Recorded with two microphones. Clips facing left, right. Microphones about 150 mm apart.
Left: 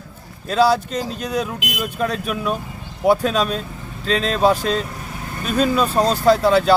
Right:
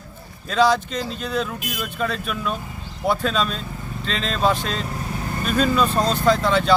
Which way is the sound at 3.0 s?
10° left (ahead or behind).